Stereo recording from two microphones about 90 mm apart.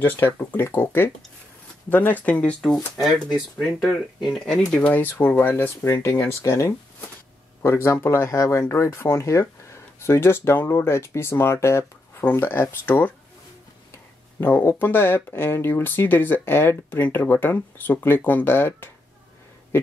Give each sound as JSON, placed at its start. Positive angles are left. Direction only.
{"t": 0.0, "sound": "speech", "side_deg": 20}
{"t": 2.7, "sound": "speech", "side_deg": 0}
{"t": 4.3, "sound": "speech", "side_deg": 5}
{"t": 4.7, "sound": "speech", "side_deg": 20}
{"t": 14.4, "sound": "speech", "side_deg": 25}